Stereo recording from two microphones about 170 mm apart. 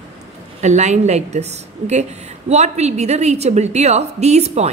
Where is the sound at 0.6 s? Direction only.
45° right (ahead or behind).